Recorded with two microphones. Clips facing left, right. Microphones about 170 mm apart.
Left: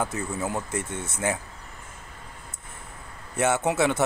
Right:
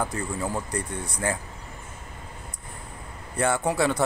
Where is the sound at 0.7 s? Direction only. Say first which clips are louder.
Even; 25° left (ahead or behind).